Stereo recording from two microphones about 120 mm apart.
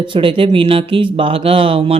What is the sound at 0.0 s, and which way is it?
Speech, 45° right (ahead or behind).